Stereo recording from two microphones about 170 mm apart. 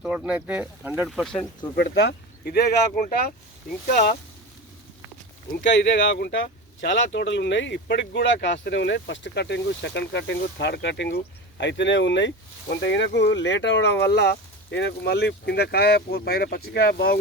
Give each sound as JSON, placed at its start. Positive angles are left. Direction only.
{"t": 0.0, "sound": "speech", "side_deg": -5}
{"t": 1.0, "sound": "speech", "side_deg": 0}
{"t": 1.7, "sound": "speech", "side_deg": 80}
{"t": 2.9, "sound": "speech", "side_deg": 55}
{"t": 5.7, "sound": "speech", "side_deg": 90}